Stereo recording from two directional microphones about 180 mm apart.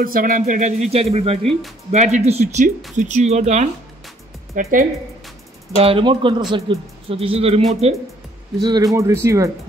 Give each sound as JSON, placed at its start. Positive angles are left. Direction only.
{"t": 0.0, "sound": "speech", "side_deg": -50}
{"t": 4.6, "sound": "a woman's voice", "side_deg": -50}
{"t": 5.8, "sound": "speech", "side_deg": -30}
{"t": 8.5, "sound": "speech", "side_deg": -20}